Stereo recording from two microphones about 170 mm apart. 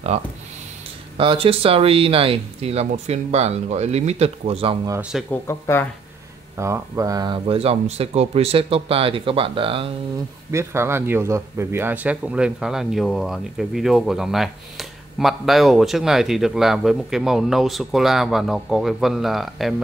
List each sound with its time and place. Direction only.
0.1 s speech: 40° right (ahead or behind)
5.3 s speech: 15° left (ahead or behind)
6.5 s speech: 15° right (ahead or behind); by 9.8 s 30° right (ahead or behind)
10.5 s a man's voice: 15° right (ahead or behind); by 19.7 s centre (ahead or behind)